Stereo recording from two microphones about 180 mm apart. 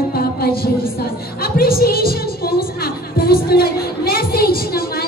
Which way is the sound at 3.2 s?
55° left (ahead or behind).